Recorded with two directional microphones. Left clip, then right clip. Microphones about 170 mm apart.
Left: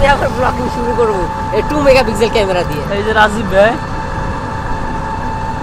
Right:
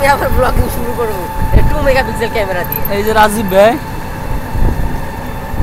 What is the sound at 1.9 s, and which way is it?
Speech, 65° left (ahead or behind).